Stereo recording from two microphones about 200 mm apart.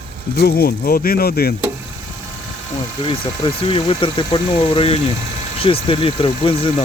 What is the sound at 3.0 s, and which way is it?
Speech, 25° left (ahead or behind).